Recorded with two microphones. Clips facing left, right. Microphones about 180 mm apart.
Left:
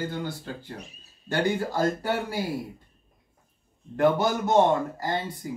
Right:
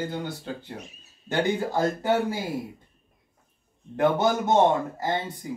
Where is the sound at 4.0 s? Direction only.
20° right (ahead or behind).